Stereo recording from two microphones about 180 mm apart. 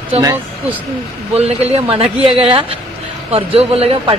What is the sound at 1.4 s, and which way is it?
A man's voice, 35° right (ahead or behind).